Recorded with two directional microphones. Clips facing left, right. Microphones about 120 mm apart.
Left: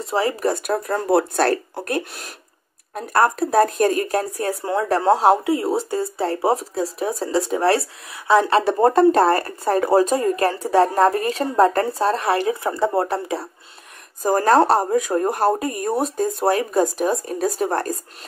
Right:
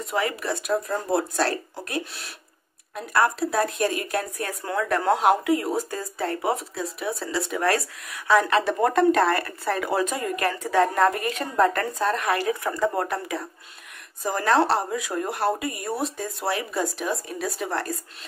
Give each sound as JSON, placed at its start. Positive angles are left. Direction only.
{"t": 0.0, "sound": "speech", "side_deg": 30}
{"t": 0.7, "sound": "speech", "side_deg": 65}
{"t": 14.2, "sound": "speech", "side_deg": 40}